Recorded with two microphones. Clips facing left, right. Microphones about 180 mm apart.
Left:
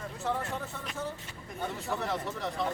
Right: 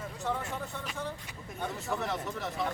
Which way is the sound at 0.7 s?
Centre (ahead or behind).